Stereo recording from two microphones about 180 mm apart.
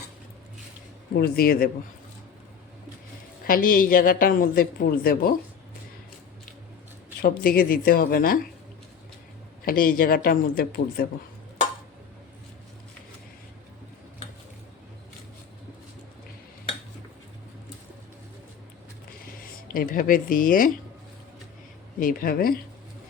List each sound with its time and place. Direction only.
1.1 s speech: 55° left (ahead or behind)
3.4 s speech: 50° left (ahead or behind)
7.2 s speech: 55° left (ahead or behind)
9.6 s speech: 55° left (ahead or behind)
19.7 s speech: 50° left (ahead or behind)
22.0 s speech: 55° left (ahead or behind)